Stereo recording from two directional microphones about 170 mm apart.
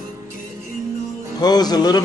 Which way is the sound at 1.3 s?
25° left (ahead or behind).